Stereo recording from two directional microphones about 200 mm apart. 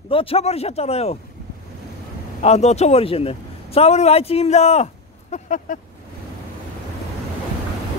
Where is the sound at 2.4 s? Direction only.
35° left (ahead or behind).